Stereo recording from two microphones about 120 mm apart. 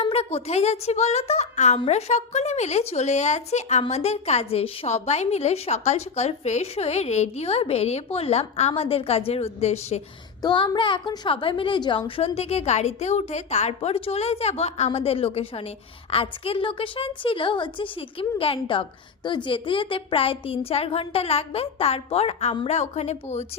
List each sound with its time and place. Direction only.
0.0 s a woman's voice: 55° left (ahead or behind)
10.4 s child singing: 40° left (ahead or behind)
10.8 s a woman's voice: 45° left (ahead or behind); by 23.5 s 65° left (ahead or behind)